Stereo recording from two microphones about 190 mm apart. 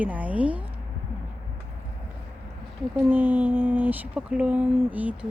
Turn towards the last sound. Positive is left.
turn(degrees=-10)  # may be behind; listen again after turning